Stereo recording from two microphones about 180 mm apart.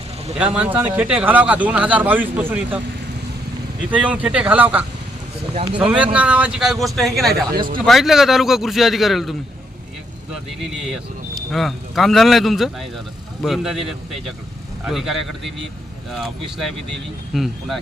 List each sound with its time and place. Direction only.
0.3 s speech: 5° right (ahead or behind)
7.5 s a man's voice: 55° right (ahead or behind)
7.9 s speech: centre (ahead or behind)
10.7 s speech: centre (ahead or behind)